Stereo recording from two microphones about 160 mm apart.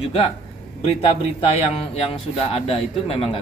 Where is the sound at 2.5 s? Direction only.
35° left (ahead or behind).